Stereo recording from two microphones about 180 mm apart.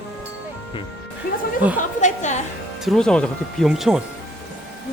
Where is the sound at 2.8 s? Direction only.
5° left (ahead or behind).